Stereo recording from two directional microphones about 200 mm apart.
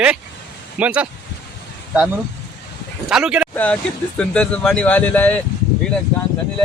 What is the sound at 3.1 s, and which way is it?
Speech, 5° right (ahead or behind).